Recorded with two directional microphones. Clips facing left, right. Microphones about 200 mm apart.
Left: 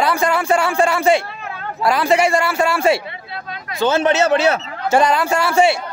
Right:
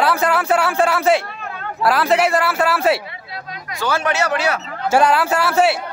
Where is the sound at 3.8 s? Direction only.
25° left (ahead or behind).